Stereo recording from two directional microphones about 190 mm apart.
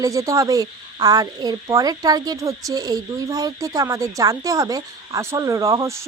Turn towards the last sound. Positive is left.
turn(degrees=-15)  # may be behind; listen again after turning